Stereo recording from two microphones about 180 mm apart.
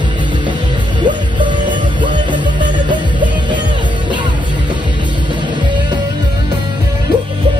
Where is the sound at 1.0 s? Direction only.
25° right (ahead or behind).